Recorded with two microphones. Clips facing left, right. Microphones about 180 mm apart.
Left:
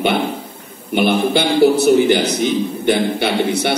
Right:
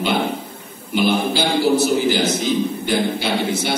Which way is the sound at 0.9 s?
60° left (ahead or behind).